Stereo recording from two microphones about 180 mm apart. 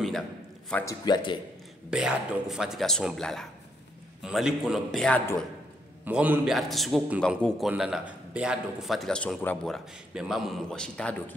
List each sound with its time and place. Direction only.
0.8 s a man's voice: 25° left (ahead or behind)
1.9 s a man's voice: 5° right (ahead or behind)
6.0 s a man's voice: 10° right (ahead or behind)